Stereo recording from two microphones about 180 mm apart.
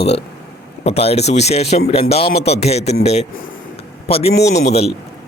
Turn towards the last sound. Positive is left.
turn(degrees=35)  # may be behind; listen again after turning